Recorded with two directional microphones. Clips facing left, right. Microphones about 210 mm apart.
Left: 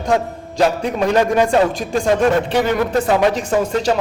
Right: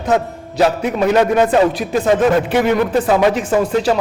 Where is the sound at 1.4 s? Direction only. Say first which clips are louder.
Right 2 dB; 5° right (ahead or behind).